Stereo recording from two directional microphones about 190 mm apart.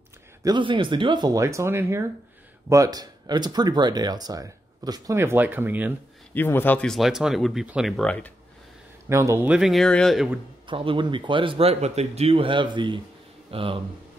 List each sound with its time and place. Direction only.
0.4 s speech: 25° right (ahead or behind)
6.3 s speech: 10° left (ahead or behind)
9.1 s speech: 15° right (ahead or behind)
10.7 s speech: 25° right (ahead or behind)